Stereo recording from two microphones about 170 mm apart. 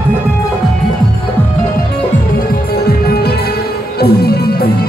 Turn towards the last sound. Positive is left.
turn(degrees=70)  # may be behind; listen again after turning